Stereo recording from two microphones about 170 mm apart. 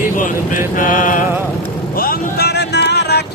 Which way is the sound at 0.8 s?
55° left (ahead or behind).